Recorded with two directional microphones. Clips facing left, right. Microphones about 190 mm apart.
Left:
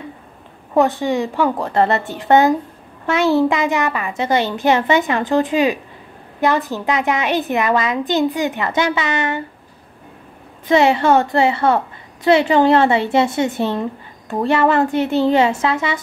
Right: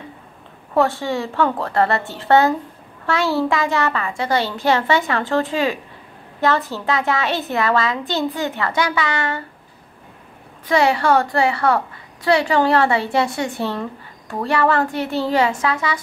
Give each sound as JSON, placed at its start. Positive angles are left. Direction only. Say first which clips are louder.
{"t": 0.7, "sound": "a child's voice", "louder": "left 3 dB", "side_deg": 20}
{"t": 10.7, "sound": "a child's voice", "louder": "left 3 dB", "side_deg": 20}